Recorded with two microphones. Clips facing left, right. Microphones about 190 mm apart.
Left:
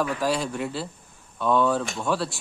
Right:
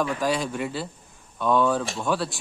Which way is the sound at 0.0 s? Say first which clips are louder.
Even; centre (ahead or behind).